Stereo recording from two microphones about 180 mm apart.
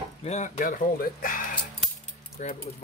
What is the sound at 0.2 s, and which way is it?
Speech, 40° left (ahead or behind).